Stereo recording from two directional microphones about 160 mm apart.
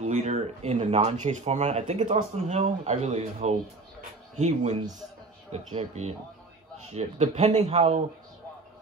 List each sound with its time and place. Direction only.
0.0 s speech: 45° right (ahead or behind)